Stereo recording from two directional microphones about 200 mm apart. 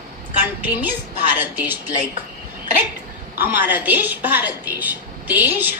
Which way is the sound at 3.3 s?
10° right (ahead or behind).